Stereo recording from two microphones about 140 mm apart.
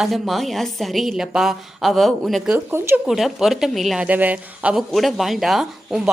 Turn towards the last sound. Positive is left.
turn(degrees=0)  # may be behind; listen again after turning